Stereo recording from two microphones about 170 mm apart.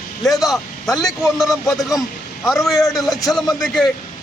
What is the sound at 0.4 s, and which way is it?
A man's voice, centre (ahead or behind).